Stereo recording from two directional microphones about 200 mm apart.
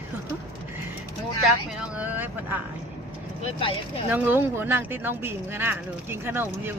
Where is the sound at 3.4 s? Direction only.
30° left (ahead or behind).